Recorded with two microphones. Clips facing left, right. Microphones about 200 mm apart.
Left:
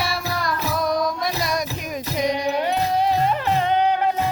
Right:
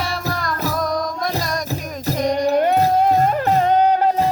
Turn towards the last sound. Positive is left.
turn(degrees=-40)  # may be behind; listen again after turning